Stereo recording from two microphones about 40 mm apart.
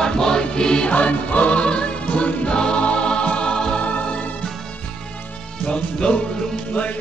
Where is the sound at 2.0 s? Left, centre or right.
Left.